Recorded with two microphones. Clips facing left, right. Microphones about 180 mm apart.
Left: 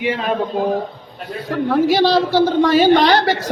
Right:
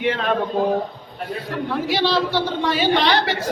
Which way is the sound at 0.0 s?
5° left (ahead or behind).